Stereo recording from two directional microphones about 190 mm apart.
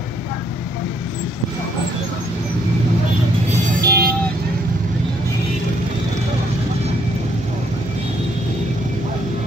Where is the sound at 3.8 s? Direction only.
55° right (ahead or behind).